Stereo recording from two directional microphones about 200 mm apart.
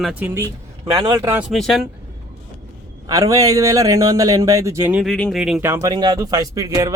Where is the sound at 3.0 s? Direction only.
15° right (ahead or behind).